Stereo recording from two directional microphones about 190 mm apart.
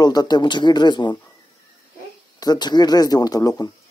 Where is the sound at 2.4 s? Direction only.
20° left (ahead or behind).